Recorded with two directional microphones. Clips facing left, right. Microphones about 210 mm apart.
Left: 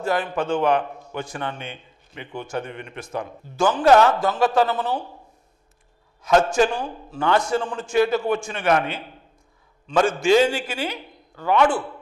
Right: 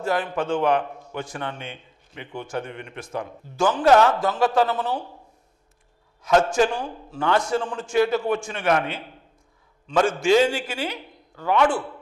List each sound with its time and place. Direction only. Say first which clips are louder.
0.0 s a man's voice: left 1 dB; 15° left (ahead or behind)
6.2 s a man's voice: left 1 dB; 15° left (ahead or behind)